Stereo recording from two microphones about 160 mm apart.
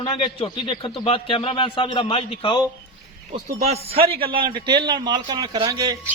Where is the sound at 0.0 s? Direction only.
35° left (ahead or behind).